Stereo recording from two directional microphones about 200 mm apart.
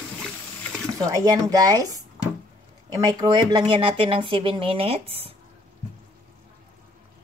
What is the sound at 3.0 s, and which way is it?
Speech, 20° right (ahead or behind).